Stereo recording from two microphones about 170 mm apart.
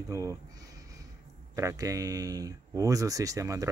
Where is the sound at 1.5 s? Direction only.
20° right (ahead or behind).